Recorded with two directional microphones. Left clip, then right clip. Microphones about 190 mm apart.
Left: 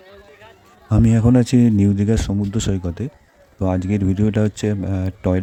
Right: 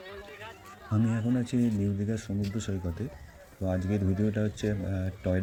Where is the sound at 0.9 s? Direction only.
45° left (ahead or behind).